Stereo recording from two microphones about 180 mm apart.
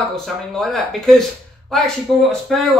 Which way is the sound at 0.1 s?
Centre (ahead or behind).